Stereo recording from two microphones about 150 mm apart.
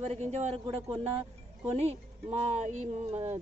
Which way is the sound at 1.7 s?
45° right (ahead or behind).